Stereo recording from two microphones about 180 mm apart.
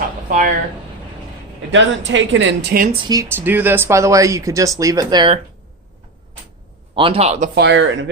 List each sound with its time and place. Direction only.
0.3 s speech: 45° right (ahead or behind)
1.7 s speech: 90° right; by 2.8 s 65° right (ahead or behind)
3.1 s speech: 15° right (ahead or behind)
6.9 s a man's voice: 30° right (ahead or behind)
7.5 s speech: 75° right (ahead or behind)